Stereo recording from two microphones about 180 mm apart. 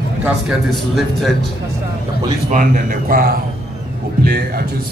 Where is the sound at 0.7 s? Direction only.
Centre (ahead or behind).